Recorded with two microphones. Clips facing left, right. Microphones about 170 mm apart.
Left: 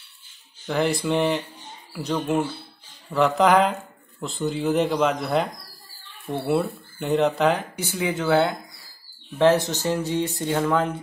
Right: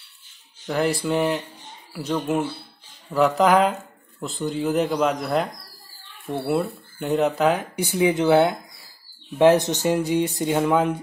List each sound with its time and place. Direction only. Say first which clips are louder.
0.7 s speech: even; centre (ahead or behind)
7.7 s speech: right 6 dB; 15° right (ahead or behind)